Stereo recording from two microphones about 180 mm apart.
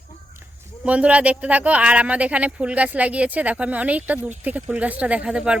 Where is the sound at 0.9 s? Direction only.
5° right (ahead or behind).